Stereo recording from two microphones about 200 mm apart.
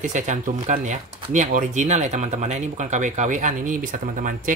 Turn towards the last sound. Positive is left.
turn(degrees=-40)  # may be behind; listen again after turning